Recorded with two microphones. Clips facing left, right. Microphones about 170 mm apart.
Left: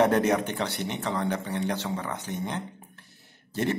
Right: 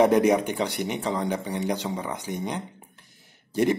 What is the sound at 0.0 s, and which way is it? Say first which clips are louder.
A man's voice: right 3 dB; 10° right (ahead or behind).